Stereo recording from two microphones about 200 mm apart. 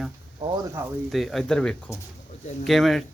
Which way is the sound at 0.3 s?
25° right (ahead or behind).